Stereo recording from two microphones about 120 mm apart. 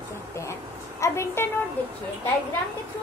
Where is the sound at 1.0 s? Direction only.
25° left (ahead or behind).